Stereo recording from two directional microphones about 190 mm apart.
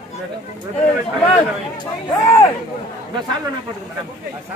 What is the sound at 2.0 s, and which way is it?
Speech, 20° left (ahead or behind).